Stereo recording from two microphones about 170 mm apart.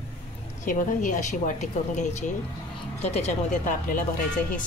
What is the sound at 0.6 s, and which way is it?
Speech, 50° left (ahead or behind).